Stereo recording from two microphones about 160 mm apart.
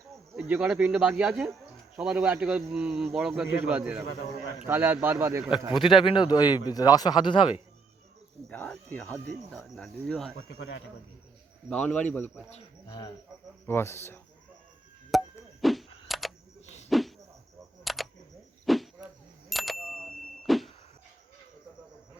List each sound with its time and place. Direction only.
0.3 s a man's voice: 10° right (ahead or behind)
5.8 s a man's voice: 30° left (ahead or behind)
8.4 s speech: 10° left (ahead or behind)
9.5 s speech: centre (ahead or behind)
10.6 s speech: 90° left
11.7 s speech: 5° left (ahead or behind)
12.5 s speech: 40° left (ahead or behind)
13.7 s speech: 15° left (ahead or behind)
15.1 s a sound: centre (ahead or behind)
19.5 s bicycle bell: centre (ahead or behind)
20.5 s music: centre (ahead or behind)